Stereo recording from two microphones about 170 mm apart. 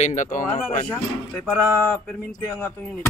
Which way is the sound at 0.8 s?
10° left (ahead or behind).